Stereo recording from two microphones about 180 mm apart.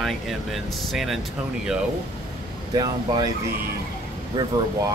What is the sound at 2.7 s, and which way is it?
Speech, 20° right (ahead or behind).